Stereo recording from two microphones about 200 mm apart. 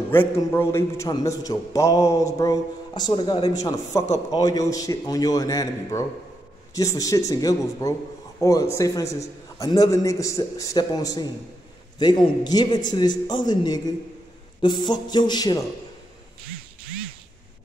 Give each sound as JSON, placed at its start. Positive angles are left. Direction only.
{"t": 0.1, "sound": "a man's voice", "side_deg": 10}
{"t": 4.1, "sound": "a man's voice", "side_deg": 20}